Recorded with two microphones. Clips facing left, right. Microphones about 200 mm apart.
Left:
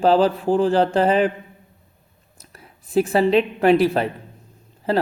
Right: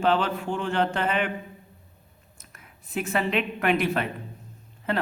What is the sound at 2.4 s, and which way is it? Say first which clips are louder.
A woman's voice: left 7 dB; 35° left (ahead or behind).